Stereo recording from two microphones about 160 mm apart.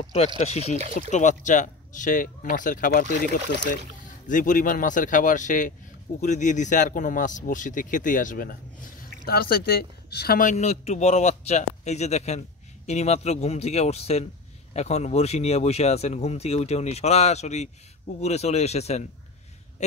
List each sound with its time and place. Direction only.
0.0 s speech: 40° left (ahead or behind); by 3.3 s 65° left (ahead or behind)
4.3 s speech: 55° left (ahead or behind)
9.2 s speech: 70° left (ahead or behind); by 19.0 s 40° left (ahead or behind)